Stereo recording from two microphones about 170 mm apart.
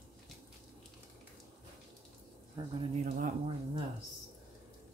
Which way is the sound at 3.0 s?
55° right (ahead or behind).